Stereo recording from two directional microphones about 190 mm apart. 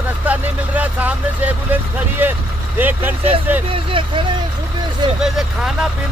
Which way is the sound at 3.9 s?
25° right (ahead or behind).